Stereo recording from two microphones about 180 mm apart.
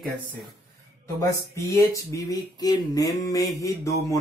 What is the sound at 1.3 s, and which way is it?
Speech, 15° left (ahead or behind).